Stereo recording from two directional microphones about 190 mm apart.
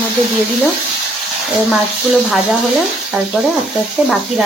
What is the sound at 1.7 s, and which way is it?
Speech, centre (ahead or behind).